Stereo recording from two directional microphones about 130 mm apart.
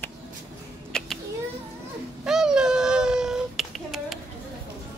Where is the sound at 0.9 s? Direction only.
5° left (ahead or behind).